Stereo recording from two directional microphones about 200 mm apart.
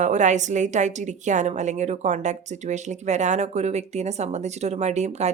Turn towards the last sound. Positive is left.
turn(degrees=-35)  # may be behind; listen again after turning